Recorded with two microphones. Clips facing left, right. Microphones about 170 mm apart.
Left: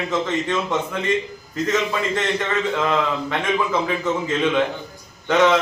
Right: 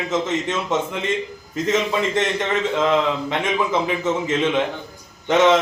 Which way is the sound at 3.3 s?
20° right (ahead or behind).